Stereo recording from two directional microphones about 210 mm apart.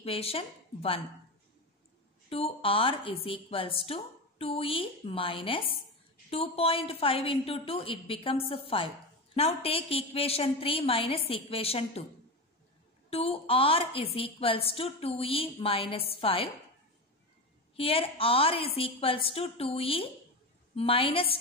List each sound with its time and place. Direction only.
0.0 s speech: 25° left (ahead or behind)
2.2 s a woman's voice: 25° left (ahead or behind)
13.1 s a woman's voice: 30° left (ahead or behind)
17.7 s a woman's voice: 25° left (ahead or behind)